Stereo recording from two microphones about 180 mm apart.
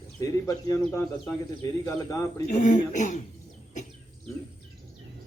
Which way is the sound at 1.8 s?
15° left (ahead or behind).